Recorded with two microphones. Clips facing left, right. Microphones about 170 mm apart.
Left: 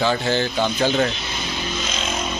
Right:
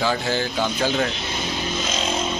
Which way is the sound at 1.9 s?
35° right (ahead or behind).